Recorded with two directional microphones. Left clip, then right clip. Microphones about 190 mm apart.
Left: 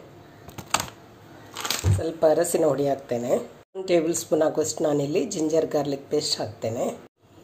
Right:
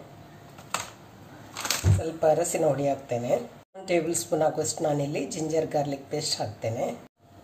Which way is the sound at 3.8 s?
30° left (ahead or behind).